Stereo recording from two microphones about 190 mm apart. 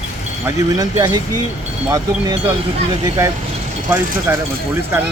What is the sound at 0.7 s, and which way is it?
Speech, 20° right (ahead or behind).